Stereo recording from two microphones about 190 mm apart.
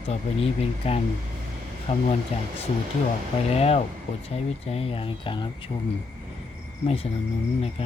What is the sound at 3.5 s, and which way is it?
Speech, 35° left (ahead or behind).